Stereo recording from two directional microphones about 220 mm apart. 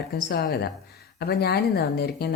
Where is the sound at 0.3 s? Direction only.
45° left (ahead or behind).